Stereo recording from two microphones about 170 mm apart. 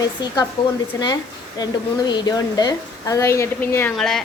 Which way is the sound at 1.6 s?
25° left (ahead or behind).